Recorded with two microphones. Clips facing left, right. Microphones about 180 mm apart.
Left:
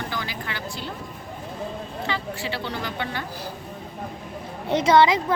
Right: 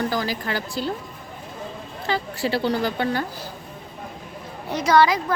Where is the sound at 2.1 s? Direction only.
40° right (ahead or behind).